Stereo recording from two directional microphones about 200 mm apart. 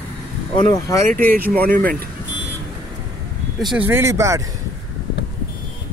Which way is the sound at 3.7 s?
10° right (ahead or behind).